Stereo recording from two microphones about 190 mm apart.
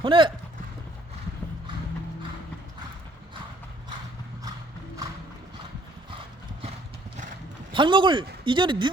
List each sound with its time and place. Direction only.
0.0 s speech: 25° right (ahead or behind)
7.7 s speech: 25° right (ahead or behind)